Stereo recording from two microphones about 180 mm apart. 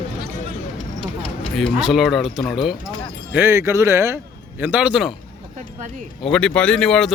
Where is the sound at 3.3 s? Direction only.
15° right (ahead or behind).